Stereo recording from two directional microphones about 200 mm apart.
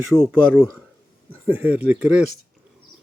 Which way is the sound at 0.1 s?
20° left (ahead or behind).